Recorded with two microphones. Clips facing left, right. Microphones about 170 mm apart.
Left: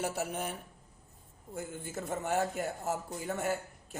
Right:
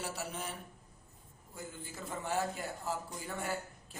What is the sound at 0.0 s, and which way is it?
Speech, 55° left (ahead or behind).